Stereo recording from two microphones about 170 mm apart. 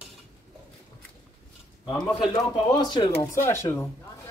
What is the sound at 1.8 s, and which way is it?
Speech, 5° left (ahead or behind).